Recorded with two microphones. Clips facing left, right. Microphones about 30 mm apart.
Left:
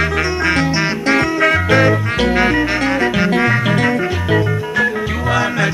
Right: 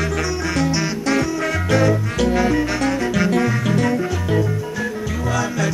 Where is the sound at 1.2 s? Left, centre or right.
Left.